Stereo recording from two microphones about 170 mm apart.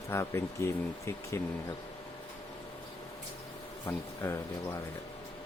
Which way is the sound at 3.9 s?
15° left (ahead or behind).